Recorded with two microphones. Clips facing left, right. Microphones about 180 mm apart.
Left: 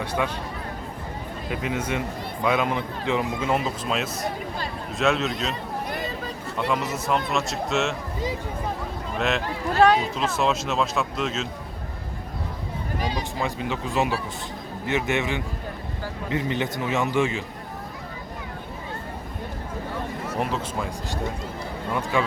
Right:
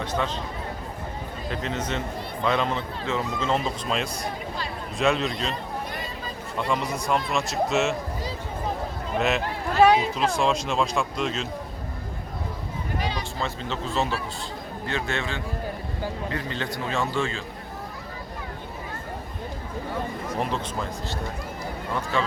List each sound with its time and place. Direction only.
0.0 s speech: 10° left (ahead or behind)
1.5 s speech: 10° left (ahead or behind)
6.7 s speech: 5° left (ahead or behind)
9.1 s speech: centre (ahead or behind)
13.0 s speech: 45° left (ahead or behind)
13.4 s speech: 15° left (ahead or behind)
22.1 s speech: 15° left (ahead or behind)